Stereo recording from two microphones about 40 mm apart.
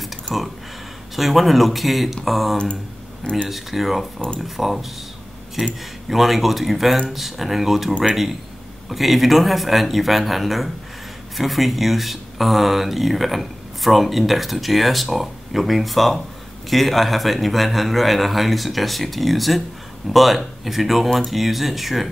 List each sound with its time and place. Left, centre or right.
0.0 s a sound: centre
1.1 s speech: centre
2.5 s speech: left
3.4 s speech: centre
6.0 s speech: centre